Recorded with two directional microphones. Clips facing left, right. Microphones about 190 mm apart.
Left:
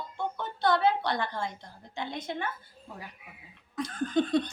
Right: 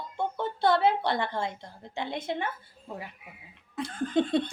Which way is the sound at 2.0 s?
25° right (ahead or behind).